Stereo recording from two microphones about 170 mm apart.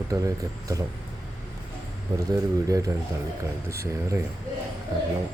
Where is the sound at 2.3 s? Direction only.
20° right (ahead or behind).